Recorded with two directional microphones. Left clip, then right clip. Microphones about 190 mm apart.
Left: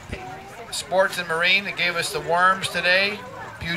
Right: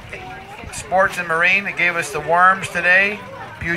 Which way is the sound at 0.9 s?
30° left (ahead or behind).